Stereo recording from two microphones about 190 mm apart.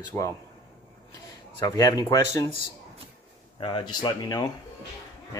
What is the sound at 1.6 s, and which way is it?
Speech, 20° left (ahead or behind).